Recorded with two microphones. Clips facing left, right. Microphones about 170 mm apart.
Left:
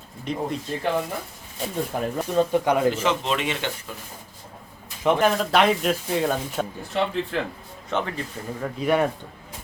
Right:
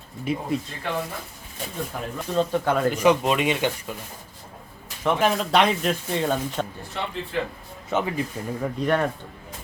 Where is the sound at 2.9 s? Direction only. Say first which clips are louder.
Right 4 dB; 15° right (ahead or behind).